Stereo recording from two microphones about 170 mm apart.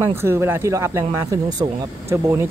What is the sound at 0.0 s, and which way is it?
Speech, 15° right (ahead or behind).